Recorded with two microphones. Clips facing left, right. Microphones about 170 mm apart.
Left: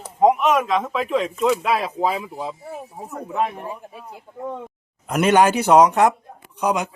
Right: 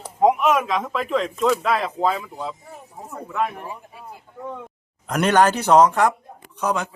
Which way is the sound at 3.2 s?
30° left (ahead or behind).